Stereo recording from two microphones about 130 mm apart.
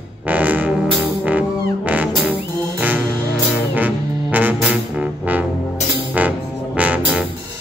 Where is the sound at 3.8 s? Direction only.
10° right (ahead or behind).